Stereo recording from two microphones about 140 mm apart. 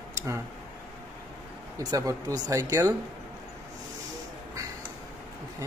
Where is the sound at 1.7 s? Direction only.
25° right (ahead or behind).